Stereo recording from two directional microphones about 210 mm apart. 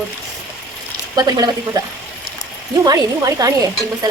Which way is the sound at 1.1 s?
20° right (ahead or behind).